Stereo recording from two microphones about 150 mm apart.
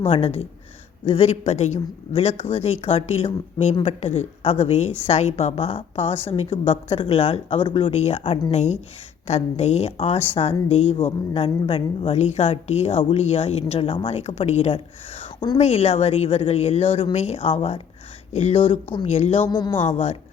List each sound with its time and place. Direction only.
0.1 s a woman's voice: 45° left (ahead or behind)
19.5 s speech: 30° left (ahead or behind)
19.9 s a woman's voice: 45° left (ahead or behind)